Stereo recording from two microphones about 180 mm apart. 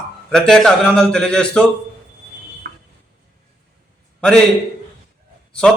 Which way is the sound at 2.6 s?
60° right (ahead or behind).